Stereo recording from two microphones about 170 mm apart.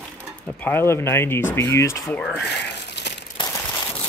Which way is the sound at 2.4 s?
80° left.